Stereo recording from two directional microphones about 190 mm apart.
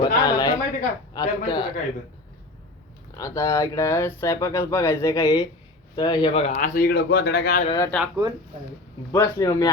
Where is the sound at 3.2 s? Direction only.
15° left (ahead or behind).